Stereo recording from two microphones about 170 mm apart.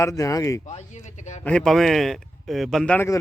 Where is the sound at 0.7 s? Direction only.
45° left (ahead or behind).